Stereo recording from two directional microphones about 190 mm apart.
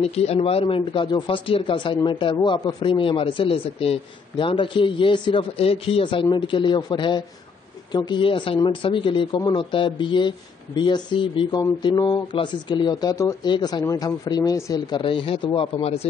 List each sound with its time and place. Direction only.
0.0 s speech: 35° left (ahead or behind)